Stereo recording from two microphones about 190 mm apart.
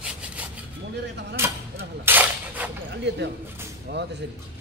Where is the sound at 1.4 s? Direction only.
15° right (ahead or behind).